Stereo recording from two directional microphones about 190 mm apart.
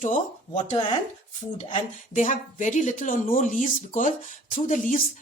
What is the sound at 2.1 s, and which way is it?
A woman's voice, 40° left (ahead or behind).